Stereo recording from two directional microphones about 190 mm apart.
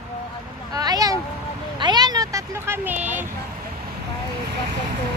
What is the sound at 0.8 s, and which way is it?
Speech, 20° right (ahead or behind).